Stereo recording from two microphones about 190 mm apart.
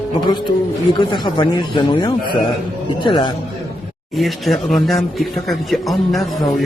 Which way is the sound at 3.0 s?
25° left (ahead or behind).